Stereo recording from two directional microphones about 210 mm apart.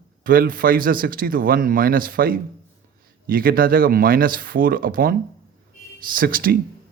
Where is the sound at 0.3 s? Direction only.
40° right (ahead or behind).